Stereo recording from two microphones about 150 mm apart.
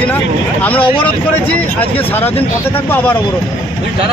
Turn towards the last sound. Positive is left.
turn(degrees=10)  # may be behind; listen again after turning